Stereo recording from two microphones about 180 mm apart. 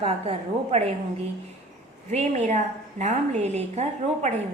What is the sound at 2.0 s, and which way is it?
A woman's voice, 40° right (ahead or behind).